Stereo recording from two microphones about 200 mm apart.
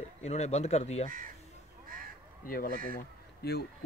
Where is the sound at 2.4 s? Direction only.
45° left (ahead or behind).